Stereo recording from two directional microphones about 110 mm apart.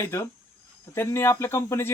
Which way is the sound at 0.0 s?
25° left (ahead or behind).